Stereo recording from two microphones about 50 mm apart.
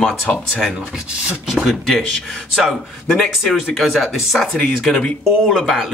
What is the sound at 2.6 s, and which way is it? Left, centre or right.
Speech, centre.